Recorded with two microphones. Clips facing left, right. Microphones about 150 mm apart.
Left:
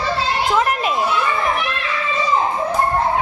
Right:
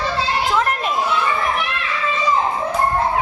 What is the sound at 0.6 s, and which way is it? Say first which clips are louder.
Children playing: left 2 dB; 5° left (ahead or behind).